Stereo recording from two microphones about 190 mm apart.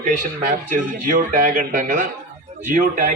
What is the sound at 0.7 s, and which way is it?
A man's voice, 45° right (ahead or behind).